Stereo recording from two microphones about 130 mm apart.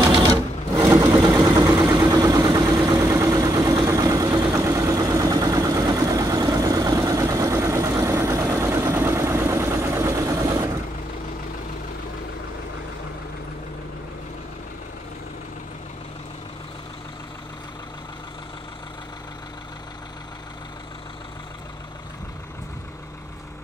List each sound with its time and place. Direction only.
0.0 s sewing machine: 30° right (ahead or behind)